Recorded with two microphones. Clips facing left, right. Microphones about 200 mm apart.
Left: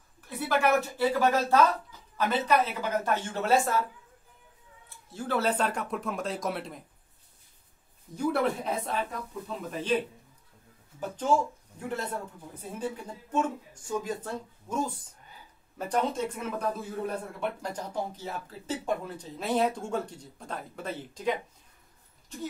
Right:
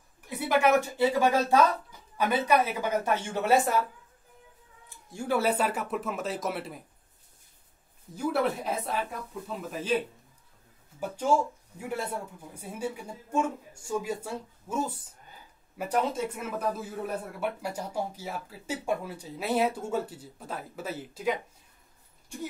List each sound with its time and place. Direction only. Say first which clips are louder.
0.4 s speech: right 2 dB; 15° right (ahead or behind)
4.8 s speech: right 2 dB; 15° right (ahead or behind)
8.1 s speech: even; centre (ahead or behind)